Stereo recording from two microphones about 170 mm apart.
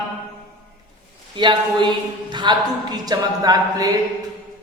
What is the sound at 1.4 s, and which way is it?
Speech, 25° right (ahead or behind).